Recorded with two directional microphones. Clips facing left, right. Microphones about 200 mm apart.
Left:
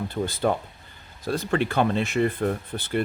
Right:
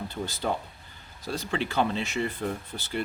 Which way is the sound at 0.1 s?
55° left (ahead or behind).